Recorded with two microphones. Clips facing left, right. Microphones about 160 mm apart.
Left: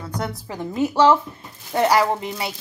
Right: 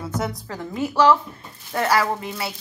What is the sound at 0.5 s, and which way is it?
A woman's voice, 20° left (ahead or behind).